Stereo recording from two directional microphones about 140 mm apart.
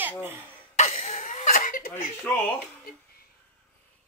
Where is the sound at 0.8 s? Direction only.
55° left (ahead or behind); by 1.9 s 75° left (ahead or behind).